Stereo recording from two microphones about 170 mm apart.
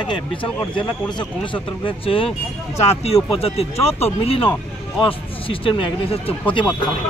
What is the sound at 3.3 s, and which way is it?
Speech, 35° left (ahead or behind).